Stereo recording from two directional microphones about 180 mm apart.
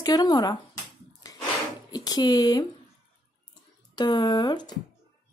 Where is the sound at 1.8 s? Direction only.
20° left (ahead or behind).